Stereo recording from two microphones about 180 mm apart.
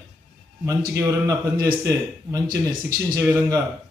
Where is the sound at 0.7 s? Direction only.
20° right (ahead or behind).